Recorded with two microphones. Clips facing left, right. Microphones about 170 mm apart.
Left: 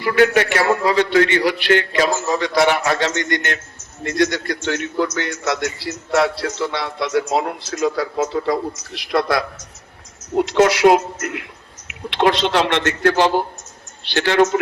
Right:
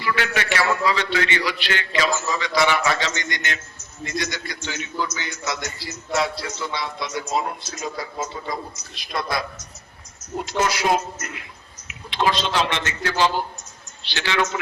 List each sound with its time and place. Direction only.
0.0 s a man's voice: 50° left (ahead or behind)